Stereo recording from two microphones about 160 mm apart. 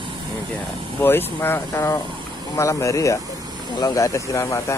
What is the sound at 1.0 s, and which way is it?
Speech, 15° left (ahead or behind).